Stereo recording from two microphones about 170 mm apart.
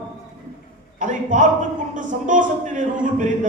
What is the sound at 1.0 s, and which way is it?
Speech, 50° right (ahead or behind).